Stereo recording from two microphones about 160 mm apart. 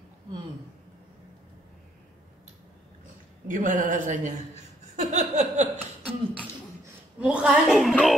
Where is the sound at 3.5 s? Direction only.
55° right (ahead or behind).